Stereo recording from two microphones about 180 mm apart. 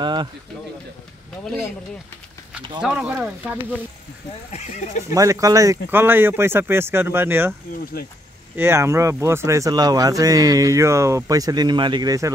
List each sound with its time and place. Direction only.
0.0 s speech: 25° right (ahead or behind)
2.8 s speech: 5° right (ahead or behind)
4.5 s speech: 40° left (ahead or behind)
5.1 s speech: 20° right (ahead or behind)
8.5 s speech: 15° right (ahead or behind)